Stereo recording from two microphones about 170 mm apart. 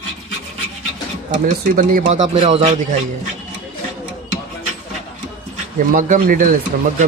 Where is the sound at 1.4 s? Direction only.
55° right (ahead or behind).